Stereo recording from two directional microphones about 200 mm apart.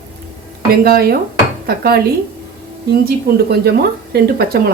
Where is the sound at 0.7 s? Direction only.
50° right (ahead or behind).